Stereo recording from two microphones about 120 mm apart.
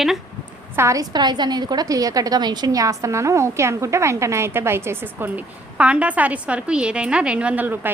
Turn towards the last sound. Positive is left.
turn(degrees=-15)  # may be behind; listen again after turning